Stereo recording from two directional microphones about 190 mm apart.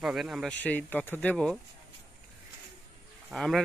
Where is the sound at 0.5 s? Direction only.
10° left (ahead or behind).